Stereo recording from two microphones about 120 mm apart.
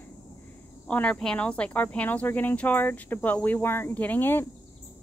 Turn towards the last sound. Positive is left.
turn(degrees=20)  # may be behind; listen again after turning